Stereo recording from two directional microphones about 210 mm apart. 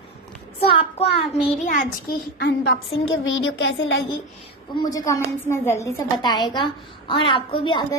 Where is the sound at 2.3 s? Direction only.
60° left (ahead or behind).